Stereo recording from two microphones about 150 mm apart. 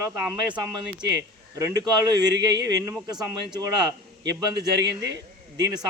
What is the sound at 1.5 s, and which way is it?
Speech, 20° right (ahead or behind).